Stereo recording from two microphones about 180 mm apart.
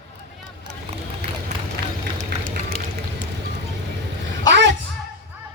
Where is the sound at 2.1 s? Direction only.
50° right (ahead or behind).